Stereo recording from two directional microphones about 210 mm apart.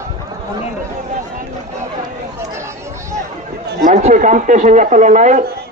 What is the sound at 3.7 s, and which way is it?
Speech, 35° right (ahead or behind).